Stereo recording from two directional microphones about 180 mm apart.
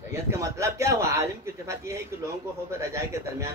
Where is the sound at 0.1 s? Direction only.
15° right (ahead or behind).